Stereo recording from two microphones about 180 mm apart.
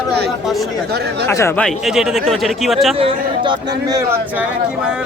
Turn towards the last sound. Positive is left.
turn(degrees=-20)  # may be behind; listen again after turning